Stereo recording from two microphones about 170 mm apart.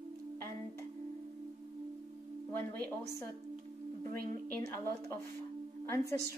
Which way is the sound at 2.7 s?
10° left (ahead or behind).